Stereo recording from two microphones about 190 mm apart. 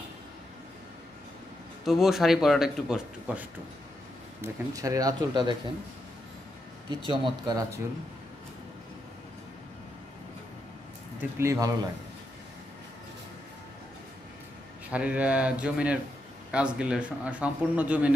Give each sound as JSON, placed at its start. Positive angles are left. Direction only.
{"t": 1.9, "sound": "speech", "side_deg": 0}
{"t": 4.4, "sound": "speech", "side_deg": -15}
{"t": 6.9, "sound": "speech", "side_deg": -25}
{"t": 11.1, "sound": "speech", "side_deg": -15}
{"t": 14.9, "sound": "speech", "side_deg": -5}